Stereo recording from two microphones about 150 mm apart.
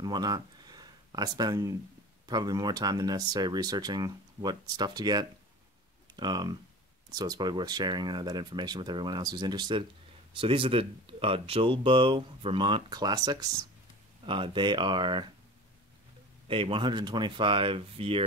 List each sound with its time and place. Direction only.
0.0 s speech: 25° right (ahead or behind)
14.2 s speech: 35° right (ahead or behind)
16.4 s speech: 35° right (ahead or behind)